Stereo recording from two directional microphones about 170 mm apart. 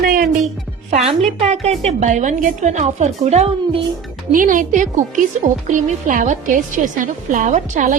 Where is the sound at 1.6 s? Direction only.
40° right (ahead or behind).